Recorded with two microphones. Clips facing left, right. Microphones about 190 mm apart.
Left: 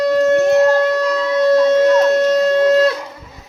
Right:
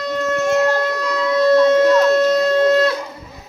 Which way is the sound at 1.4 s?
20° left (ahead or behind).